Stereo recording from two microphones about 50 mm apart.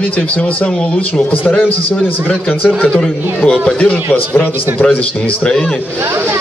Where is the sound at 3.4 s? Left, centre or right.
Centre.